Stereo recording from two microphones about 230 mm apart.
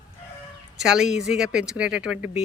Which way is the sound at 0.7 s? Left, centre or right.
Centre.